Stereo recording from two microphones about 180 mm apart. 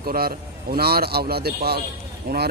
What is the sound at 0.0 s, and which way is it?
Speech, 55° right (ahead or behind).